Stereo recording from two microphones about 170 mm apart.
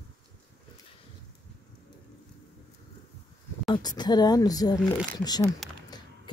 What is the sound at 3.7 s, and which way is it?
Speech, 25° left (ahead or behind).